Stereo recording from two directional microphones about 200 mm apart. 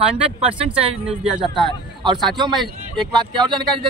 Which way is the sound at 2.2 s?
Centre (ahead or behind).